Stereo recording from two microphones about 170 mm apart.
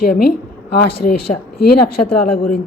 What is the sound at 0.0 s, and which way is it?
Speech, 65° left (ahead or behind).